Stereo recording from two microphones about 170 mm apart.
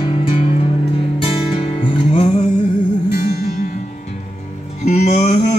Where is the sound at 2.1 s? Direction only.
40° left (ahead or behind).